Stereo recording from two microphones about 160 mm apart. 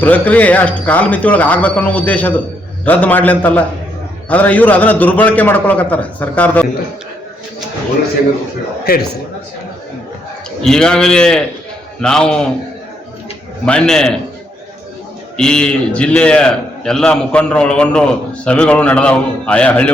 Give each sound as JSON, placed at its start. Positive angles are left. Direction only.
{"t": 0.0, "sound": "a man's voice", "side_deg": 10}
{"t": 8.8, "sound": "a man's voice", "side_deg": 75}
{"t": 10.6, "sound": "a man's voice", "side_deg": 5}
{"t": 13.7, "sound": "a man's voice", "side_deg": 5}
{"t": 15.4, "sound": "a man's voice", "side_deg": 5}